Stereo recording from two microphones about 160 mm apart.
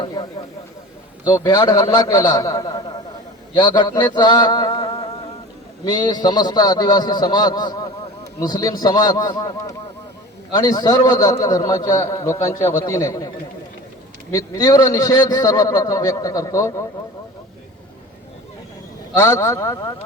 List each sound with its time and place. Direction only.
0.0 s a man's voice: 30° left (ahead or behind)
19.1 s a man's voice: 20° left (ahead or behind)